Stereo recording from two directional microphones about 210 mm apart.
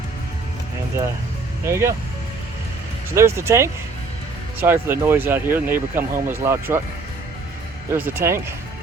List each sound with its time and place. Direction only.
1.6 s speech: 15° right (ahead or behind)
3.2 s speech: 10° right (ahead or behind)
7.9 s speech: 10° right (ahead or behind)